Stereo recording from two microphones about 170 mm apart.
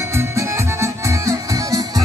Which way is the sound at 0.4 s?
15° right (ahead or behind).